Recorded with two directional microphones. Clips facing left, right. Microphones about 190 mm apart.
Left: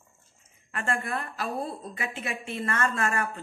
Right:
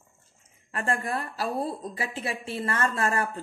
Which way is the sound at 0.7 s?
35° right (ahead or behind).